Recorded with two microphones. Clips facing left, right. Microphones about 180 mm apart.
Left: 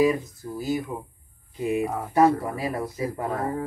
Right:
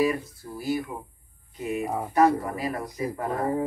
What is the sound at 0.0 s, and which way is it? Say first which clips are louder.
Speech: left 3 dB; 20° left (ahead or behind).